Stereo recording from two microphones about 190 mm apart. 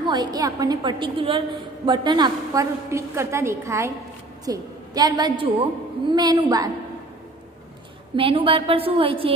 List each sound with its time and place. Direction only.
0.0 s a woman's voice: 25° right (ahead or behind)
8.2 s a woman's voice: 30° right (ahead or behind)